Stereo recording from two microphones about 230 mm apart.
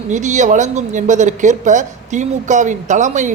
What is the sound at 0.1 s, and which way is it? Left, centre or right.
Speech, right.